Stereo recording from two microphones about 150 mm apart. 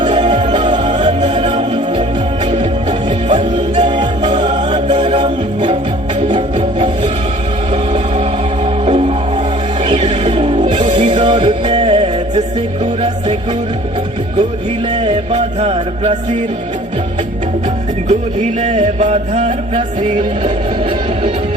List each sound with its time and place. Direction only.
0.2 s music: 35° right (ahead or behind)
1.0 s music: 45° right (ahead or behind)
3.8 s music: 30° right (ahead or behind)
14.9 s music: 35° right (ahead or behind)
18.1 s music: 50° right (ahead or behind)